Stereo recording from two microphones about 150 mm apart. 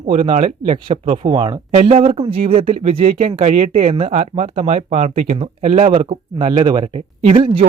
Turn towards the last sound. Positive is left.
turn(degrees=-35)  # may be behind; listen again after turning